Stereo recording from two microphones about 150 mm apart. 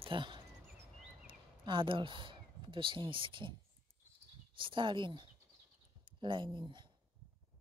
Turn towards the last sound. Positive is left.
turn(degrees=-30)  # may be behind; listen again after turning